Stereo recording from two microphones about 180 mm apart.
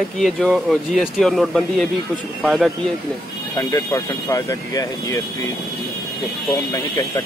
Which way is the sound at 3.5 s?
20° left (ahead or behind).